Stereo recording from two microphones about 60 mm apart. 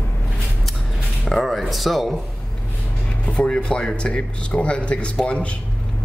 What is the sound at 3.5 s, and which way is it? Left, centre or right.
Speech, centre.